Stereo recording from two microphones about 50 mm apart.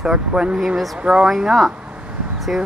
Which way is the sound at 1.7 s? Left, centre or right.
Right.